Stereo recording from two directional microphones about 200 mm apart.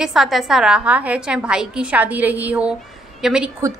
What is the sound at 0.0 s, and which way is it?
A woman's voice, centre (ahead or behind).